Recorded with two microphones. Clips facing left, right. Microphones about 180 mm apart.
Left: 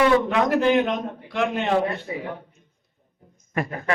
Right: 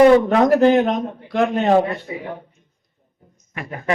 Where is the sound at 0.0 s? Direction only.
40° right (ahead or behind).